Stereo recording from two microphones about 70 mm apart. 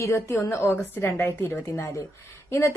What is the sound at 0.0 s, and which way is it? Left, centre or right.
Speech, left.